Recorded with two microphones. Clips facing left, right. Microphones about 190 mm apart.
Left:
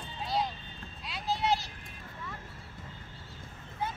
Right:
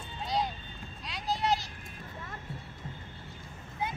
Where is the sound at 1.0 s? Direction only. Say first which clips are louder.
Even; 5° left (ahead or behind).